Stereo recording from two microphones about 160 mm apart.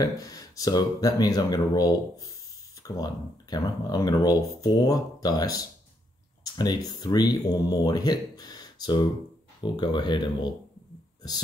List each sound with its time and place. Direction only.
0.0 s speech: 25° left (ahead or behind)